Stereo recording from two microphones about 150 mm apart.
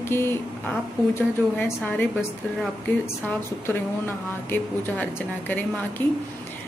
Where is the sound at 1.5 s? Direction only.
10° left (ahead or behind).